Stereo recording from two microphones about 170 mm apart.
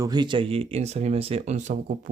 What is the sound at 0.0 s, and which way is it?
Speech, 25° right (ahead or behind).